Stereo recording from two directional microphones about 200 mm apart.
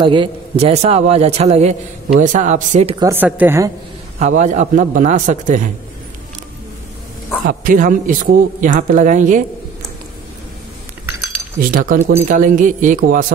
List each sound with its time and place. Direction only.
0.0 s a man's voice: 25° right (ahead or behind)
3.0 s a woman's voice: 10° right (ahead or behind)
4.2 s a man's voice: 35° right (ahead or behind)
7.4 s a man's voice: 45° right (ahead or behind)
11.7 s a man's voice: 45° right (ahead or behind)